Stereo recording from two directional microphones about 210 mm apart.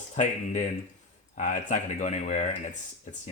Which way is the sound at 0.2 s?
35° left (ahead or behind).